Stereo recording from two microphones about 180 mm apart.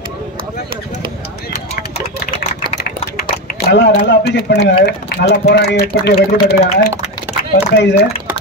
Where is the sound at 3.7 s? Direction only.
70° left (ahead or behind).